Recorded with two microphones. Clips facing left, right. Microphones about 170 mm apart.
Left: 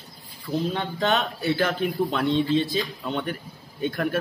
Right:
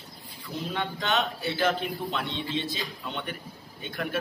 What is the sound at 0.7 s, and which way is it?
A man's voice, 40° left (ahead or behind).